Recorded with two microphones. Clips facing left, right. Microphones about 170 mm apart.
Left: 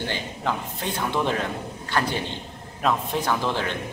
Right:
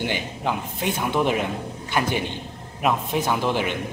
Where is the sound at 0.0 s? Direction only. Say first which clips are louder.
Right 2 dB; 15° right (ahead or behind).